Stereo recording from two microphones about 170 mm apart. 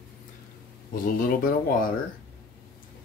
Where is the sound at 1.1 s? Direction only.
55° left (ahead or behind).